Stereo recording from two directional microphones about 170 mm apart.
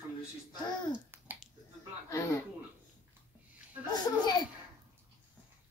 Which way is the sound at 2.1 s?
15° left (ahead or behind).